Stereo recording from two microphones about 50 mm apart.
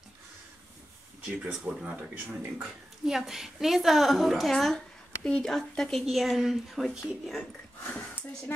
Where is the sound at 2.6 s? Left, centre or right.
Centre.